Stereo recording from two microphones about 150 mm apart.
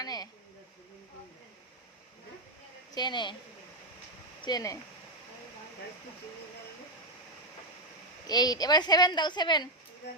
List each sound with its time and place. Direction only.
0.0 s a sound: 25° left (ahead or behind)
2.9 s speech: 30° left (ahead or behind)
4.4 s speech: 25° left (ahead or behind)
8.3 s a woman's voice: 25° left (ahead or behind)